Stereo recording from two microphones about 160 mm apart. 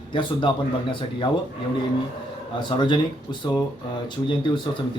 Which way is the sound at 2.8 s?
30° left (ahead or behind).